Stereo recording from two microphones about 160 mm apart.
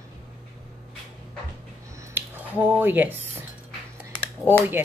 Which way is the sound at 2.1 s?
10° right (ahead or behind).